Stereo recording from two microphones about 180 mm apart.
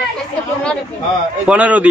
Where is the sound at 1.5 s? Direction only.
10° right (ahead or behind).